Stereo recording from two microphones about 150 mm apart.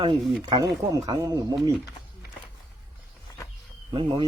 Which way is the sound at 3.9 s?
35° right (ahead or behind).